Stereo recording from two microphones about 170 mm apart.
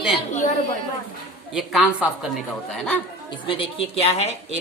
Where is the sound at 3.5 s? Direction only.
30° left (ahead or behind).